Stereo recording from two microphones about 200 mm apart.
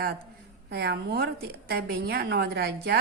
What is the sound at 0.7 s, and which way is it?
A woman's voice, 55° right (ahead or behind).